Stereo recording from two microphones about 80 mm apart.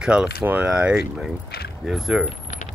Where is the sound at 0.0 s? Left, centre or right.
Centre.